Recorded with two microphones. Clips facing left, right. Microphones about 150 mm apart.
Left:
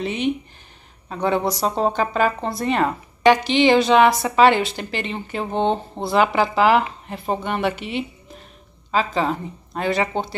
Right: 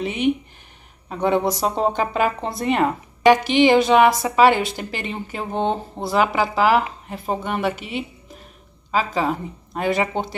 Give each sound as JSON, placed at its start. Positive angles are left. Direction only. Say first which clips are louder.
{"t": 0.0, "sound": "a woman's voice", "louder": "right 2 dB", "side_deg": -10}